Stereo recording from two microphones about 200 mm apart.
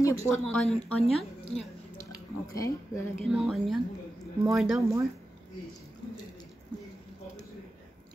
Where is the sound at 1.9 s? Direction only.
15° left (ahead or behind).